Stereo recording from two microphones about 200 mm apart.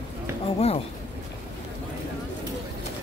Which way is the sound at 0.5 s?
30° left (ahead or behind).